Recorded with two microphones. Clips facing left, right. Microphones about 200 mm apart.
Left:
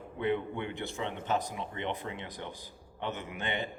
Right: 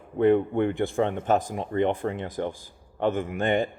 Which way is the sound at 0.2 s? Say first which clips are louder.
Right 11 dB; 50° right (ahead or behind).